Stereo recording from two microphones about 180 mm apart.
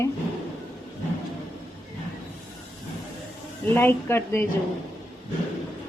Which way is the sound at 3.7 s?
15° left (ahead or behind).